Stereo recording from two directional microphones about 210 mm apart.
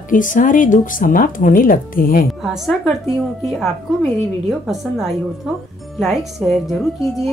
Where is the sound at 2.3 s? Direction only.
Centre (ahead or behind).